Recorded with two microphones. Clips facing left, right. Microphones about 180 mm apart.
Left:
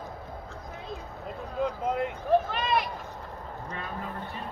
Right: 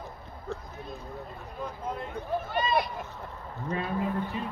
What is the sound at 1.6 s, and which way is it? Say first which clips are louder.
Speech: left 7 dB; 80° left.